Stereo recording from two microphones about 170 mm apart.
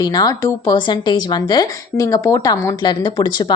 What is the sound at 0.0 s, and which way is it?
A woman's voice, 25° left (ahead or behind).